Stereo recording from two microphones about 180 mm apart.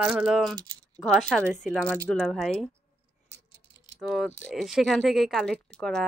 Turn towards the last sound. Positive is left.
turn(degrees=5)  # may be behind; listen again after turning